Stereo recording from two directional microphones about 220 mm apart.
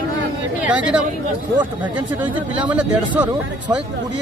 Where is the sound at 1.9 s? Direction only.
5° right (ahead or behind).